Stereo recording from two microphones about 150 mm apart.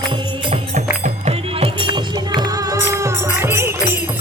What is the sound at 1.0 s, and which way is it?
Music, 45° right (ahead or behind).